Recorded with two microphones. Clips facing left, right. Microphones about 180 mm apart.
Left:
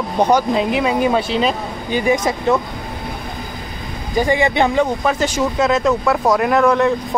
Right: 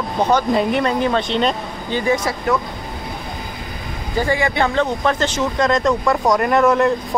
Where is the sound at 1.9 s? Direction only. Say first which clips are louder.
Left 2 dB; 20° left (ahead or behind).